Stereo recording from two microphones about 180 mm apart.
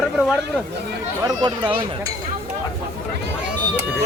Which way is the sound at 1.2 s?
20° right (ahead or behind).